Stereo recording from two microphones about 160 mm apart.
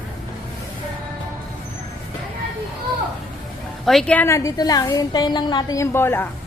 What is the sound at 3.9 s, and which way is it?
A woman's voice, 5° left (ahead or behind).